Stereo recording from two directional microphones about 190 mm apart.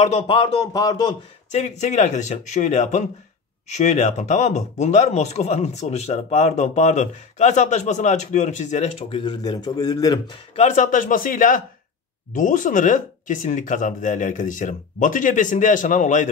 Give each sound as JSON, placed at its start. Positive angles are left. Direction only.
{"t": 0.0, "sound": "a man's voice", "side_deg": 30}
{"t": 1.5, "sound": "speech", "side_deg": 40}
{"t": 9.2, "sound": "a man's voice", "side_deg": 25}
{"t": 10.6, "sound": "speech", "side_deg": 40}